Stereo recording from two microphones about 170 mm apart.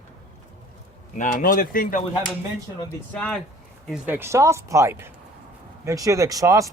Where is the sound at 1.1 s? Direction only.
55° left (ahead or behind).